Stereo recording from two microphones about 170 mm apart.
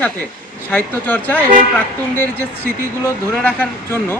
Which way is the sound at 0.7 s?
10° left (ahead or behind).